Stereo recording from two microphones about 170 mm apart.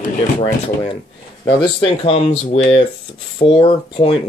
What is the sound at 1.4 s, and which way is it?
Speech, 30° left (ahead or behind).